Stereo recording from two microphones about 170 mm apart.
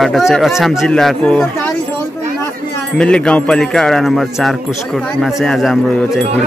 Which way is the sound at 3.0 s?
5° left (ahead or behind).